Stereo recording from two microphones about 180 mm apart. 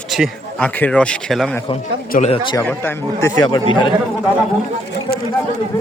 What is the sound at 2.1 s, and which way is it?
Speech, 45° left (ahead or behind).